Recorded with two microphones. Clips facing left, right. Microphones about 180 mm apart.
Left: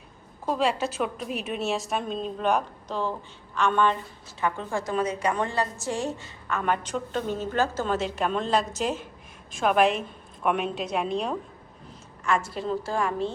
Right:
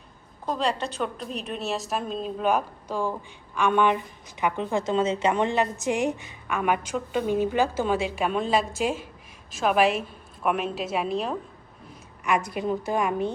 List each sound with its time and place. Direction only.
0.4 s a woman's voice: 5° left (ahead or behind)
12.2 s a woman's voice: 15° right (ahead or behind)